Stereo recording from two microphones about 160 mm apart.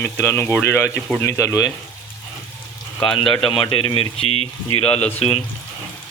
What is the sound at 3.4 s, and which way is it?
Speech, 35° left (ahead or behind).